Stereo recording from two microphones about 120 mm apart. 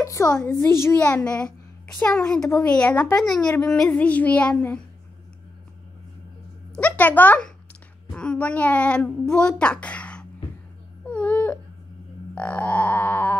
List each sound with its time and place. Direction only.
0.0 s a woman's voice: 25° left (ahead or behind)
6.7 s a child's voice: 10° left (ahead or behind)
11.1 s baby cry: 10° left (ahead or behind)
12.4 s a woman's voice: 10° left (ahead or behind)